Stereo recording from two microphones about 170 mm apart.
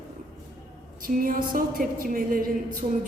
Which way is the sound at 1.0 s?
55° right (ahead or behind).